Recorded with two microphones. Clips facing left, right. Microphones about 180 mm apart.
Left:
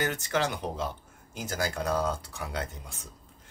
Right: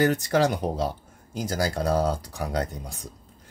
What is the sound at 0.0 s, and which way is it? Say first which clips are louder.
Speech: right 8 dB; 40° right (ahead or behind).